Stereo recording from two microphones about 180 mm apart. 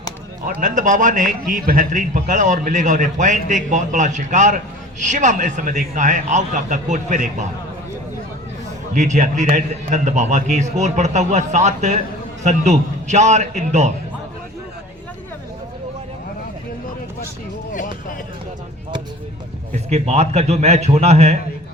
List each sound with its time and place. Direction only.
0.4 s a man's voice: 45° right (ahead or behind)
8.9 s a man's voice: 40° right (ahead or behind)
19.7 s a man's voice: 35° right (ahead or behind)